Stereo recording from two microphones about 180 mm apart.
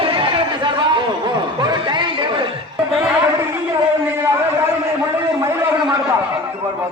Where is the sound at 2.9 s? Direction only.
Centre (ahead or behind).